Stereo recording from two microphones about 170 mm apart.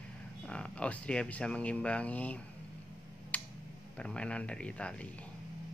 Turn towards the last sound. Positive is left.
turn(degrees=5)  # may be behind; listen again after turning